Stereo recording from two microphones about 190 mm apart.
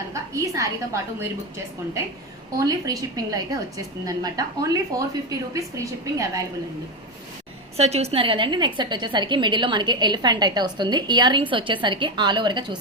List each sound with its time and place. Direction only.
0.1 s a sound: 15° right (ahead or behind)
2.6 s a woman's voice: 20° right (ahead or behind)
7.8 s a woman's voice: 35° right (ahead or behind)